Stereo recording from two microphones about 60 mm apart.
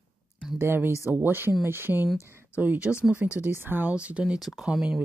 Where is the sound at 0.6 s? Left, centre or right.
Right.